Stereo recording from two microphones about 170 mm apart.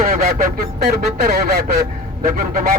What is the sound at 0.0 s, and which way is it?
A man's voice, 60° right (ahead or behind).